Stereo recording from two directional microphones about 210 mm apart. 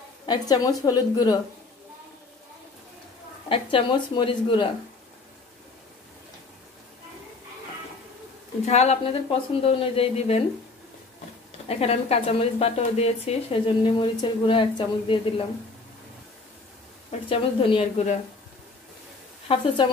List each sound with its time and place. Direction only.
0.3 s a woman's voice: 15° left (ahead or behind)
3.4 s a woman's voice: 25° left (ahead or behind)
8.6 s a woman's voice: 30° left (ahead or behind)
11.6 s a woman's voice: 30° left (ahead or behind)
17.3 s a woman's voice: 25° left (ahead or behind)
19.4 s a woman's voice: 25° left (ahead or behind)